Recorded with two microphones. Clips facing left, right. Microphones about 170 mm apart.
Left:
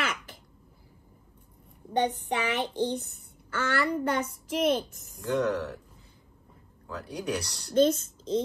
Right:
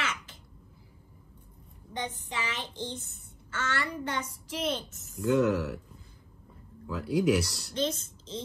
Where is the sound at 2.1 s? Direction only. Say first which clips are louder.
Left 7 dB; 65° left (ahead or behind).